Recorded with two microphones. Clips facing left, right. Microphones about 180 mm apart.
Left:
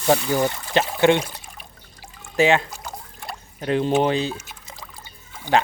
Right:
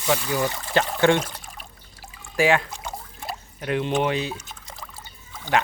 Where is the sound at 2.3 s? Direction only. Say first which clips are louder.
Left 2 dB; 25° left (ahead or behind).